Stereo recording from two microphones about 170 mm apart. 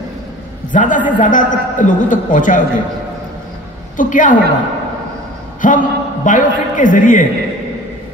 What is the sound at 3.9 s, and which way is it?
Speech, 50° left (ahead or behind).